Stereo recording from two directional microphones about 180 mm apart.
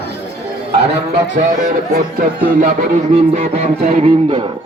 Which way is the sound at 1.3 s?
45° right (ahead or behind).